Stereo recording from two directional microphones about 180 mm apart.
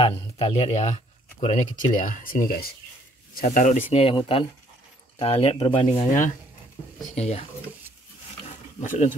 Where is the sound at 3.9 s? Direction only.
30° left (ahead or behind).